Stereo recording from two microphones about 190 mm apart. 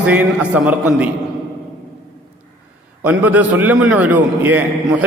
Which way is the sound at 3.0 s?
10° right (ahead or behind).